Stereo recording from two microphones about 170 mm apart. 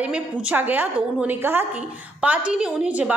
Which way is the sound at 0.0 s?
10° right (ahead or behind).